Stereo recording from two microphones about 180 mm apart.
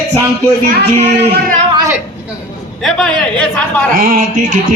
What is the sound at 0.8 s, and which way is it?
Speech, 65° right (ahead or behind).